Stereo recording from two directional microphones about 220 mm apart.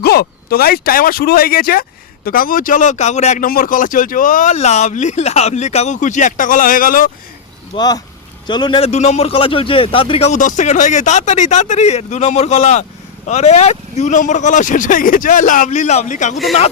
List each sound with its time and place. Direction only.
0.0 s speech: 45° left (ahead or behind)
7.8 s speech: 15° left (ahead or behind); by 16.4 s 35° left (ahead or behind)